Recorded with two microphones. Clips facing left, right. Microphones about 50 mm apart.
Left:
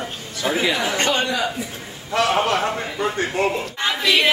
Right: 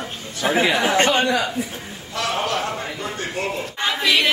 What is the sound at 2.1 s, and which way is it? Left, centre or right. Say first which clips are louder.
A man's voice: left 4 dB; left.